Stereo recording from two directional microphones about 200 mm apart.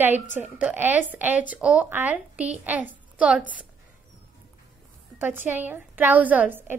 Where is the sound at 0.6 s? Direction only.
10° right (ahead or behind).